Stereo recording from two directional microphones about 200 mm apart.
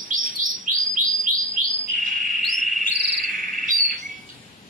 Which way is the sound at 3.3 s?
40° right (ahead or behind).